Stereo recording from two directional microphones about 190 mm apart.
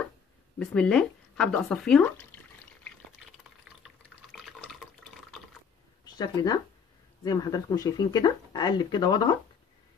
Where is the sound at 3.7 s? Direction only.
Centre (ahead or behind).